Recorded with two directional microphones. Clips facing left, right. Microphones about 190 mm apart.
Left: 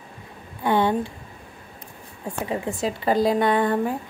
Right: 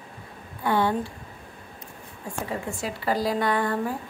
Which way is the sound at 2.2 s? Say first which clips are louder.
Left 4 dB; 20° left (ahead or behind).